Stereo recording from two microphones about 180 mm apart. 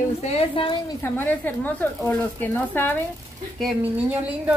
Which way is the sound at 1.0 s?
10° left (ahead or behind).